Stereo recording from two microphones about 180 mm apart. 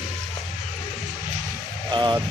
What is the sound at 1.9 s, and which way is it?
Speech, 25° right (ahead or behind).